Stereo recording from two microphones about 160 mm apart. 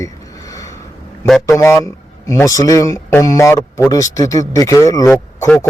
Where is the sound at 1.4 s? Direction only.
20° left (ahead or behind).